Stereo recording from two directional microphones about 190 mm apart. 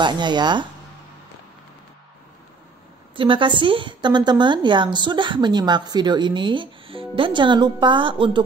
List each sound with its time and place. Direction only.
0.0 s a woman's voice: 25° right (ahead or behind)
3.2 s a woman's voice: 25° right (ahead or behind)